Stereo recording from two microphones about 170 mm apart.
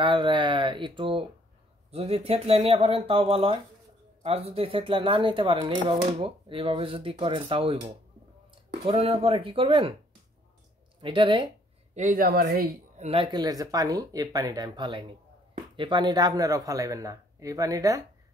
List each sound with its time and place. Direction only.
0.0 s speech: 30° right (ahead or behind)
11.0 s speech: 30° right (ahead or behind)
11.9 s a woman's voice: 50° right (ahead or behind); by 12.7 s 65° right (ahead or behind)
12.9 s speech: 35° right (ahead or behind); by 18.0 s 20° right (ahead or behind)